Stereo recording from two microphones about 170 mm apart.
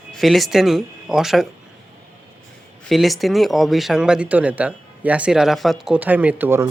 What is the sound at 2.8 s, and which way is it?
Speech, centre (ahead or behind).